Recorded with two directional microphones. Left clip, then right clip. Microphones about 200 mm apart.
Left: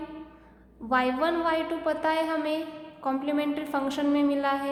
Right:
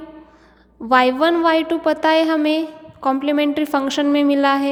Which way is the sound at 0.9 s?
45° right (ahead or behind).